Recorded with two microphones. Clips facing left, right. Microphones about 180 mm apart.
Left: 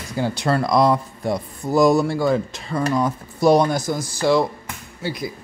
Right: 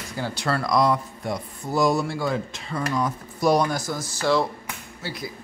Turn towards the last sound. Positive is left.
turn(degrees=15)  # may be behind; listen again after turning